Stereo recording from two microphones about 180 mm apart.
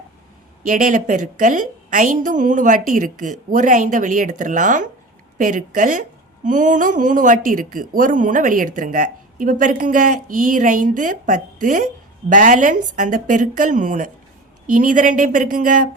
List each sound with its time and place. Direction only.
0.7 s a woman's voice: 45° right (ahead or behind)